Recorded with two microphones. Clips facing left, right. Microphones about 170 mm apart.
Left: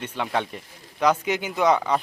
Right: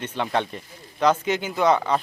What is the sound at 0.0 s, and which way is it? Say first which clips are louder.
Speech: right 2 dB; 5° left (ahead or behind).